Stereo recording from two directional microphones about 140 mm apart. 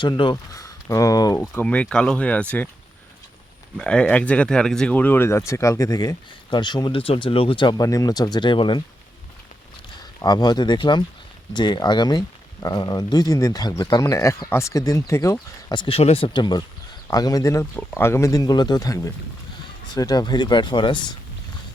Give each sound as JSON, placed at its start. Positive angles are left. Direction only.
{"t": 0.0, "sound": "speech", "side_deg": 35}
{"t": 1.6, "sound": "speech", "side_deg": 10}
{"t": 3.8, "sound": "speech", "side_deg": 5}
{"t": 10.2, "sound": "speech", "side_deg": 30}
{"t": 16.0, "sound": "speech", "side_deg": 45}